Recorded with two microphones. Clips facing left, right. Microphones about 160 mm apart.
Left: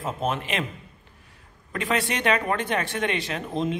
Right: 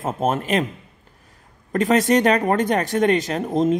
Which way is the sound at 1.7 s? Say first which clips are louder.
Right 10 dB; 40° right (ahead or behind).